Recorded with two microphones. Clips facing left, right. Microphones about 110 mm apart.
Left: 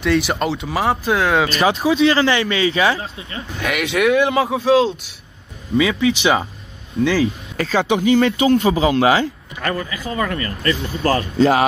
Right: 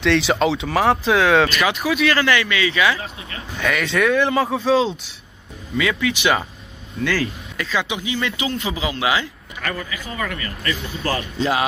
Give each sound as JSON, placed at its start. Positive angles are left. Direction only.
{"t": 0.0, "sound": "speech", "side_deg": 5}
{"t": 1.5, "sound": "speech", "side_deg": 35}
{"t": 3.6, "sound": "speech", "side_deg": 10}
{"t": 5.8, "sound": "speech", "side_deg": 25}
{"t": 7.5, "sound": "speech", "side_deg": 40}